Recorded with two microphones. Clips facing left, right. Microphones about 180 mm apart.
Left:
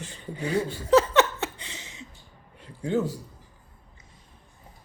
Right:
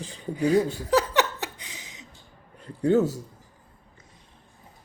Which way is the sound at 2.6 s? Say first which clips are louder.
Right 5 dB; 40° right (ahead or behind).